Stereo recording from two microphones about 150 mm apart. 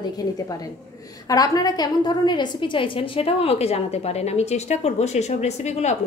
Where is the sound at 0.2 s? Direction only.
25° left (ahead or behind).